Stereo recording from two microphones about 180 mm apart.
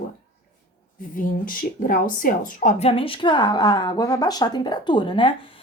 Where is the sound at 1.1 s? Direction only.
50° left (ahead or behind).